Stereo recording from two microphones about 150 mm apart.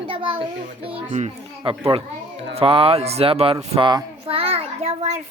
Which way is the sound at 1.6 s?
35° right (ahead or behind).